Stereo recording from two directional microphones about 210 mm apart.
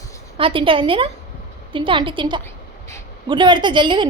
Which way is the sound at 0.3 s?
25° right (ahead or behind).